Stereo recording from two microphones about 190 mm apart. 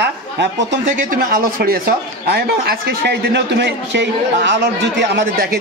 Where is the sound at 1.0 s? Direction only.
45° right (ahead or behind).